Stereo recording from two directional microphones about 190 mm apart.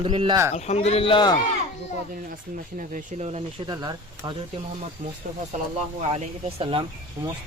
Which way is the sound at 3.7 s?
20° right (ahead or behind).